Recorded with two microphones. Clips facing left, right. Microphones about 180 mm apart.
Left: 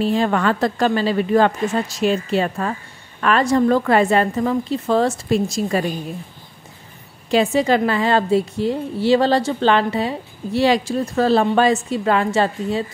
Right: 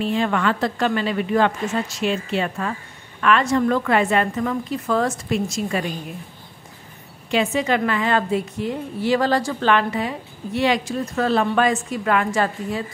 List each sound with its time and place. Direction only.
0.0 s a woman's voice: 35° left (ahead or behind)
7.2 s a woman's voice: 35° left (ahead or behind)